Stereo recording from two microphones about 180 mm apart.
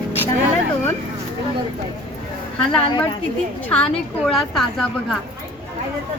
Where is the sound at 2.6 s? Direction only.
5° left (ahead or behind).